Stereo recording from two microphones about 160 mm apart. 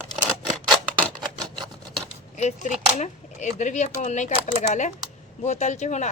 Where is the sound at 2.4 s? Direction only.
50° left (ahead or behind).